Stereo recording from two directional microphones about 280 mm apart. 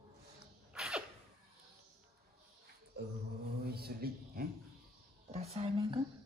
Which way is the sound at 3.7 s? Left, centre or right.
Right.